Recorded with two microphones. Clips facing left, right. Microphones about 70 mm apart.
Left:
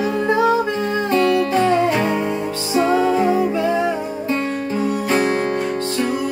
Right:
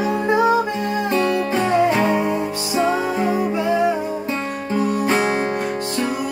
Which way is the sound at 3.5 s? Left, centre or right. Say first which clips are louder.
Even; centre.